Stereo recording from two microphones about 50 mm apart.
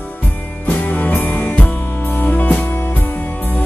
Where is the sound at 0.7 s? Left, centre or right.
Left.